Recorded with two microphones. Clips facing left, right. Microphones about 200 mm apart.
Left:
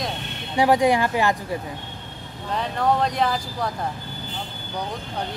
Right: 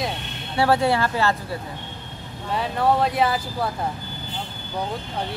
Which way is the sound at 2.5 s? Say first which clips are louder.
Right 1 dB; 5° right (ahead or behind).